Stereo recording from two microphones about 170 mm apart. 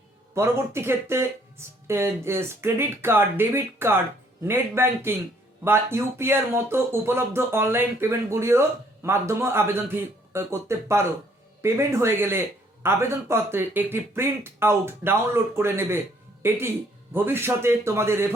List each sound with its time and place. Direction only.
0.3 s speech: 15° right (ahead or behind)